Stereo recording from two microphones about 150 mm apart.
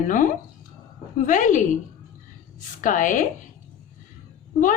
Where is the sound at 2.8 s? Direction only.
60° left (ahead or behind).